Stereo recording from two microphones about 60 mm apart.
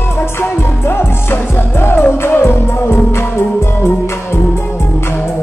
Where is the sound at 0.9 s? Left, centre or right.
Left.